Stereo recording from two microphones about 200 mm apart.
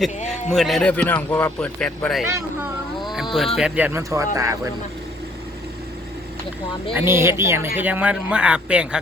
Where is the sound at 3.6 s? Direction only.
5° right (ahead or behind).